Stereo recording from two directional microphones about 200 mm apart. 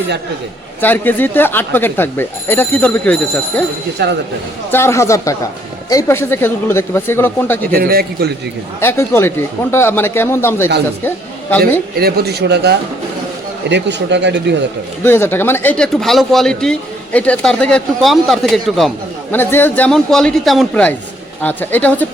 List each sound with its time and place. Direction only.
0.8 s speech: 10° left (ahead or behind)
4.0 s speech: 55° right (ahead or behind)
4.7 s speech: 15° left (ahead or behind)
7.7 s speech: 50° right (ahead or behind)
8.8 s speech: 10° left (ahead or behind)
11.9 s speech: 50° right (ahead or behind)
15.0 s speech: 10° left (ahead or behind)